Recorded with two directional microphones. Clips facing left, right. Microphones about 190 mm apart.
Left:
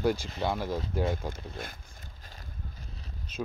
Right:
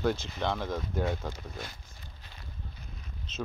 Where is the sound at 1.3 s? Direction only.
50° left (ahead or behind).